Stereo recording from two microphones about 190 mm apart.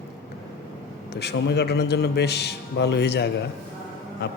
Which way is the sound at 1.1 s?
60° left (ahead or behind).